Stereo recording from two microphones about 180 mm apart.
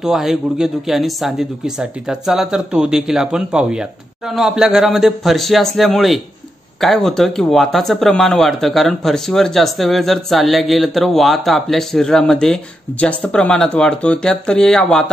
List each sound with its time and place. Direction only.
0.0 s speech: centre (ahead or behind)